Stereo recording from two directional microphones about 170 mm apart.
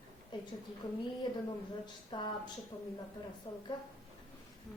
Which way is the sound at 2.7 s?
15° left (ahead or behind).